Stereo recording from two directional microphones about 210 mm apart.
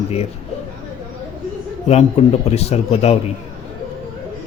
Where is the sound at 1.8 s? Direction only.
30° left (ahead or behind).